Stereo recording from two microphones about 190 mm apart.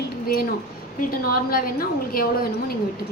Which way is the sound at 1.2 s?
50° left (ahead or behind).